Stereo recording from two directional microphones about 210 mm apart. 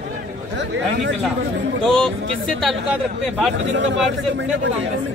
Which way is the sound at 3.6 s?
60° right (ahead or behind).